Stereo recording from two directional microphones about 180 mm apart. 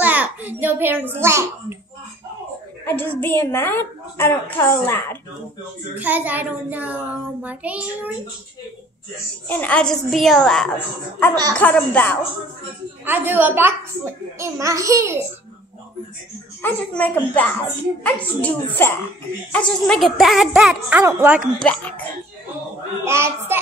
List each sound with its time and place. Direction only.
0.0 s a sound: 10° right (ahead or behind)
2.8 s a woman's voice: 10° left (ahead or behind)
5.9 s speech: 10° right (ahead or behind)
9.5 s a woman's voice: 10° left (ahead or behind)
13.0 s speech: 10° right (ahead or behind)
16.6 s a woman's voice: 10° left (ahead or behind); by 21.4 s 10° right (ahead or behind)
21.5 s a woman's voice: 10° left (ahead or behind)
23.0 s speech: 15° right (ahead or behind)